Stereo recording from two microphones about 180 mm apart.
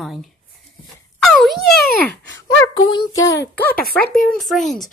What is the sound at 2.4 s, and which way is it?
Speech, 25° left (ahead or behind).